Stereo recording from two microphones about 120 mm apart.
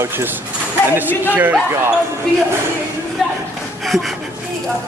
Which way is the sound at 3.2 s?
Centre (ahead or behind).